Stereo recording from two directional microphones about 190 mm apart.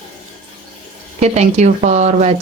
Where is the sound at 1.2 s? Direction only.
35° right (ahead or behind).